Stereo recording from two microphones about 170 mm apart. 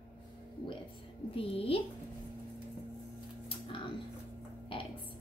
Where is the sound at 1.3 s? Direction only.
35° left (ahead or behind).